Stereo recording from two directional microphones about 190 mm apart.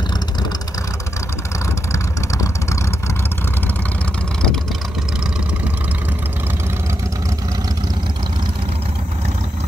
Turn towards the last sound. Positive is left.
turn(degrees=-20)  # may be behind; listen again after turning